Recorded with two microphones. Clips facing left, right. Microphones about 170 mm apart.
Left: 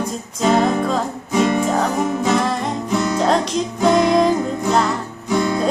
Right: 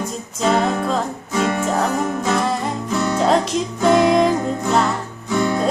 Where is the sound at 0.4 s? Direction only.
Centre (ahead or behind).